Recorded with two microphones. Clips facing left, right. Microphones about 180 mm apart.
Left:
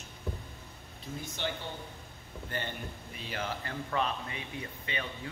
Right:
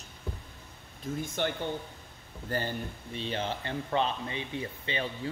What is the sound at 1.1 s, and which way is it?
Speech, 50° right (ahead or behind).